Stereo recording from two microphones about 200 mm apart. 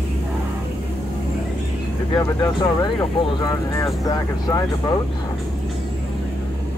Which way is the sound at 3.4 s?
15° left (ahead or behind).